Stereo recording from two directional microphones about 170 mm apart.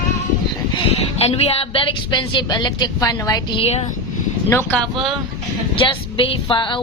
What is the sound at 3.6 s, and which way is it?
Speech, 35° left (ahead or behind).